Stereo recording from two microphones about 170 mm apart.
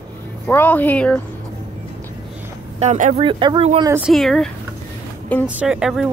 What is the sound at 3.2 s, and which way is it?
Speech, 30° right (ahead or behind).